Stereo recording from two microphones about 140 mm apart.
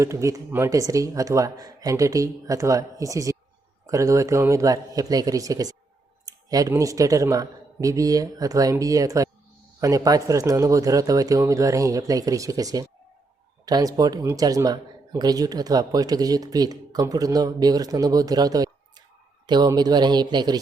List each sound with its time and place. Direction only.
0.0 s speech: 20° right (ahead or behind)